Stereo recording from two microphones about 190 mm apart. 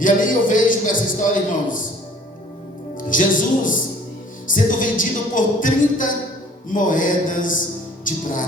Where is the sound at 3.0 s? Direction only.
45° left (ahead or behind).